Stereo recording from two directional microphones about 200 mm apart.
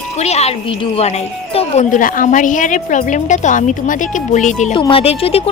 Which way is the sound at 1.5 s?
35° left (ahead or behind).